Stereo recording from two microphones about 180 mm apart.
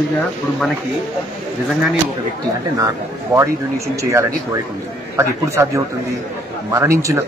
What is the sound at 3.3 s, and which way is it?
Speech, 15° right (ahead or behind).